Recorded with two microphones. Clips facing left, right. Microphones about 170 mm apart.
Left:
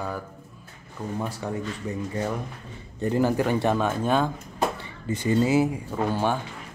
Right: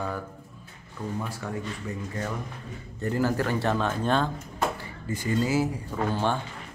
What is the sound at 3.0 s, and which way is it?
Speech, 20° left (ahead or behind).